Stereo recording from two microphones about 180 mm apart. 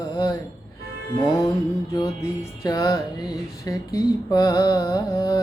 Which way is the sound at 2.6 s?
20° left (ahead or behind).